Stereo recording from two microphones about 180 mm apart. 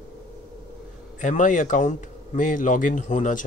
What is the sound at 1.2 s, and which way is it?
Speech, 45° left (ahead or behind).